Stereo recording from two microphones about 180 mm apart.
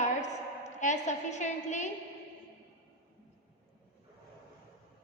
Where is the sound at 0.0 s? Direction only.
40° left (ahead or behind).